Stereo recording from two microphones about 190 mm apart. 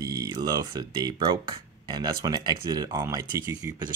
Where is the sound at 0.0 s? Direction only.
15° right (ahead or behind).